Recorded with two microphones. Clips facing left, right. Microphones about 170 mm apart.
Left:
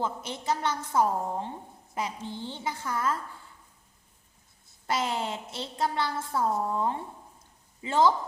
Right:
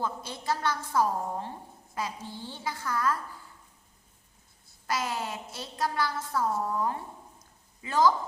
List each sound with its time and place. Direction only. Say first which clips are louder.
0.0 s a woman's voice: left 2 dB; 20° left (ahead or behind)
4.9 s a woman's voice: left 2 dB; 25° left (ahead or behind)